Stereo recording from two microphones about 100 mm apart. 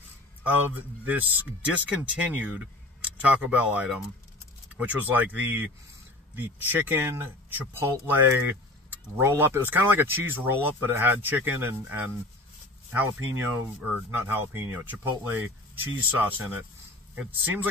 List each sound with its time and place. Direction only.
0.4 s speech: 15° right (ahead or behind)